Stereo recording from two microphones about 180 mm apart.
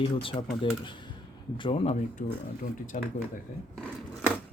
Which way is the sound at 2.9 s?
45° left (ahead or behind).